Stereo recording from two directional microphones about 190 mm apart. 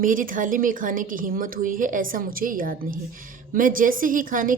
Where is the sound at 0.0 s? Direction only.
45° right (ahead or behind).